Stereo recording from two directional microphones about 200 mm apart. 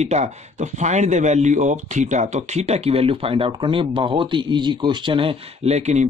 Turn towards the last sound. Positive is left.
turn(degrees=-35)  # may be behind; listen again after turning